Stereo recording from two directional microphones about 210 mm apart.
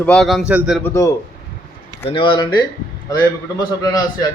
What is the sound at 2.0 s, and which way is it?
A man's voice, 25° left (ahead or behind).